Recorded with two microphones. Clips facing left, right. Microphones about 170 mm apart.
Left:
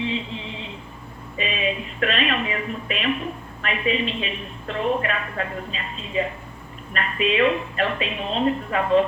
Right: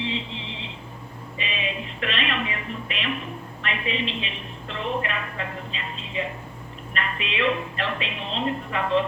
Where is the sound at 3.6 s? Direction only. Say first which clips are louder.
Left 5 dB; 45° left (ahead or behind).